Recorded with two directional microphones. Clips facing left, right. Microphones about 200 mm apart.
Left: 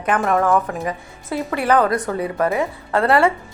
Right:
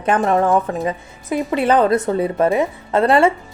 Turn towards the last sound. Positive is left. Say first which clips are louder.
# right 2 dB
turn(degrees=-20)  # may be behind; listen again after turning